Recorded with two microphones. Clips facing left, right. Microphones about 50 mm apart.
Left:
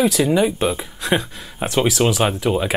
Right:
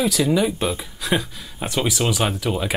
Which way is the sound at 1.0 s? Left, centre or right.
Left.